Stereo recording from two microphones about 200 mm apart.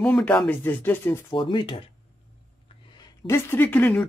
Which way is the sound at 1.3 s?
25° left (ahead or behind).